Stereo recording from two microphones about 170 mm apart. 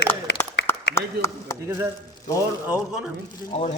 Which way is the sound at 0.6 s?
80° left.